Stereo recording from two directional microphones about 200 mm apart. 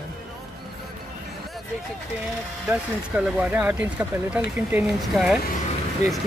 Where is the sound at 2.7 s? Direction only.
5° right (ahead or behind).